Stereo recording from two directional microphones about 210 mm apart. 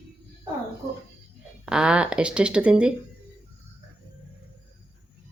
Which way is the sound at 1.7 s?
5° right (ahead or behind).